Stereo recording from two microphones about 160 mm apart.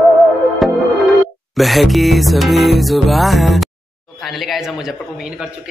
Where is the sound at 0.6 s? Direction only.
Centre (ahead or behind).